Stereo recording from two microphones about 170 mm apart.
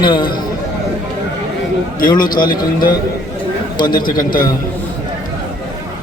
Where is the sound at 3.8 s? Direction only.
25° left (ahead or behind).